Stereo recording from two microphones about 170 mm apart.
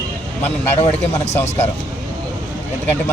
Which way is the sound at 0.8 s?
40° left (ahead or behind).